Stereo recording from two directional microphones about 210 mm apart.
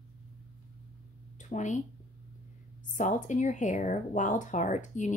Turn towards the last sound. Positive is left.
turn(degrees=35)  # may be behind; listen again after turning